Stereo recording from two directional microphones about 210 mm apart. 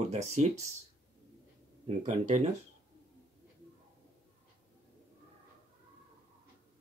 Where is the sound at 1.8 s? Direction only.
35° right (ahead or behind).